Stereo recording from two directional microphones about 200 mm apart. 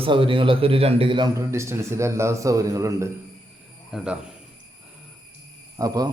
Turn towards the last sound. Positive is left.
turn(degrees=-20)  # may be behind; listen again after turning